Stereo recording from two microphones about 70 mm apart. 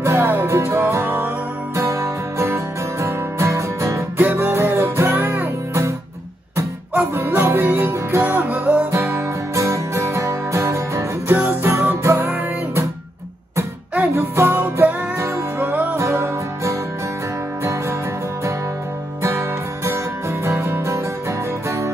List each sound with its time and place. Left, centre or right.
0.0 s music: right
1.8 s music: right
4.2 s music: right
7.2 s music: right
8.9 s music: right
11.3 s music: right
14.1 s music: right
15.1 s music: right
15.7 s music: right
16.0 s music: right
19.2 s music: right